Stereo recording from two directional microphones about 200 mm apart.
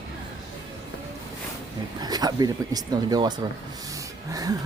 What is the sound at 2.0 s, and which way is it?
Speech, 20° right (ahead or behind).